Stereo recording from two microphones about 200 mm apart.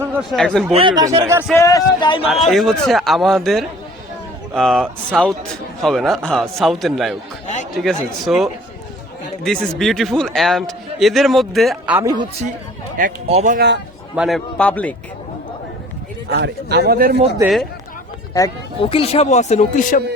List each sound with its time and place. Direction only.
0.2 s a man's voice: centre (ahead or behind)
0.7 s speech: 25° right (ahead or behind)
1.5 s speech: 15° left (ahead or behind)
2.2 s a man's voice: centre (ahead or behind)
7.4 s chatter: 35° left (ahead or behind)
7.8 s a man's voice: centre (ahead or behind)
11.9 s speech: 15° right (ahead or behind)
13.2 s speech: 35° right (ahead or behind)
13.6 s a man's voice: 60° right (ahead or behind)
14.2 s a man's voice: centre (ahead or behind)
16.3 s a man's voice: 55° right (ahead or behind)
18.8 s speech: 30° left (ahead or behind)